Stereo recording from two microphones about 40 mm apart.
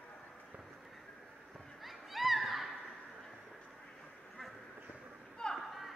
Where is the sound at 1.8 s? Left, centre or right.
Centre.